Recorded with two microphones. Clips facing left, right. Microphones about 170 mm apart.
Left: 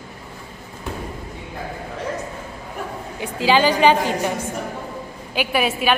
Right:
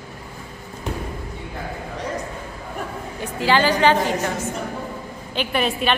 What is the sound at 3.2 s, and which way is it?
Speech, 15° left (ahead or behind).